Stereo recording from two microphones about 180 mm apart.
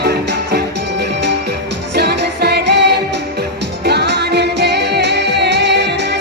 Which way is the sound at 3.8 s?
70° right (ahead or behind).